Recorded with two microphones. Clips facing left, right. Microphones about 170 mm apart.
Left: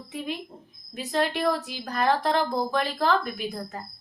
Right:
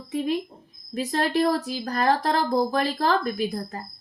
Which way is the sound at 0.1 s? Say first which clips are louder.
Right 8 dB; 40° right (ahead or behind).